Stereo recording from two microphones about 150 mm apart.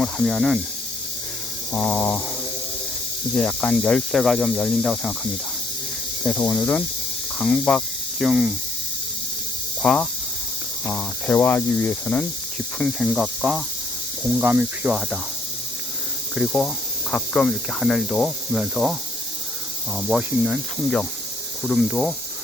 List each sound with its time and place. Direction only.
0.0 s speech: centre (ahead or behind)
1.7 s speech: 10° left (ahead or behind)
3.3 s speech: 5° left (ahead or behind)
8.2 s speech: 5° right (ahead or behind)
9.8 s speech: 5° left (ahead or behind)
16.3 s speech: centre (ahead or behind)
20.0 s speech: 5° right (ahead or behind)